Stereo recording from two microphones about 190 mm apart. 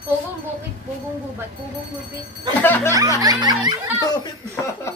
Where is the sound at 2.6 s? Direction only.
10° left (ahead or behind).